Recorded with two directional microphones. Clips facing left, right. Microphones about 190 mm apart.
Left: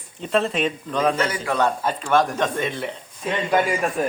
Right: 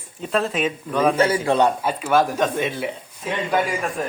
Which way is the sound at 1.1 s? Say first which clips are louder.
Right 5 dB; 30° right (ahead or behind).